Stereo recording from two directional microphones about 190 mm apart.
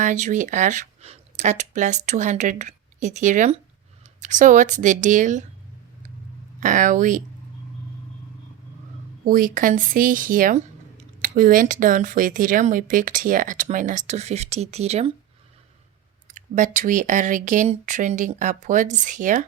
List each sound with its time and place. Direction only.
0.0 s speech: 40° right (ahead or behind)
6.6 s speech: 45° right (ahead or behind)
9.2 s speech: 45° right (ahead or behind)
16.3 s speech: 45° right (ahead or behind)